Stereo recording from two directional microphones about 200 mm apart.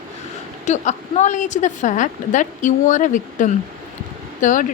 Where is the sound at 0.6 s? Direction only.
35° left (ahead or behind).